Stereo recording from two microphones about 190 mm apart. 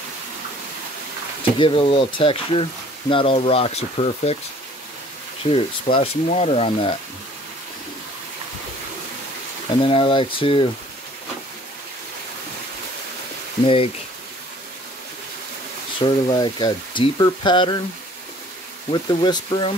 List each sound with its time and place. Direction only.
1.4 s speech: 25° left (ahead or behind)
5.5 s speech: 30° left (ahead or behind)
9.8 s speech: 30° left (ahead or behind)
16.0 s speech: 25° left (ahead or behind)
18.9 s speech: 25° left (ahead or behind)